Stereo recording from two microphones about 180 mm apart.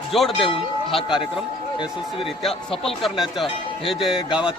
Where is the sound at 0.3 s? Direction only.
30° left (ahead or behind).